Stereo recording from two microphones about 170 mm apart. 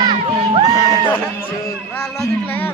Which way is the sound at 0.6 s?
20° left (ahead or behind).